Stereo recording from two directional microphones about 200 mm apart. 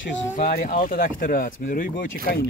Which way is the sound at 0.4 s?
40° left (ahead or behind).